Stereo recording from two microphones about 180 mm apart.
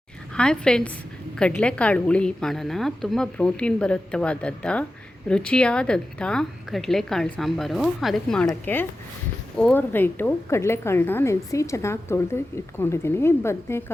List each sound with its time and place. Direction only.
0.3 s a woman's voice: 5° left (ahead or behind)